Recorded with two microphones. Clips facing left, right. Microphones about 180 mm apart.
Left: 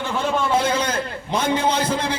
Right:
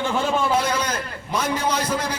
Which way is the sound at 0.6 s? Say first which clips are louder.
Left 3 dB; 30° left (ahead or behind).